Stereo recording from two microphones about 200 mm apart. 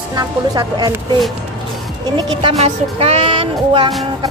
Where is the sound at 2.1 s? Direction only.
25° right (ahead or behind).